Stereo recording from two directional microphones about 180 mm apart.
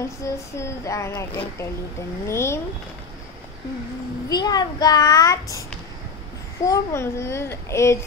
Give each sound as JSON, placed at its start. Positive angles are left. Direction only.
{"t": 0.2, "sound": "a child's voice", "side_deg": 15}
{"t": 4.3, "sound": "a child's voice", "side_deg": 20}
{"t": 6.6, "sound": "a child's voice", "side_deg": 15}